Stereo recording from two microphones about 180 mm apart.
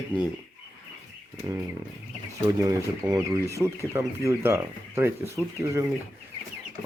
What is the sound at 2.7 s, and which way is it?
Speech, 20° right (ahead or behind).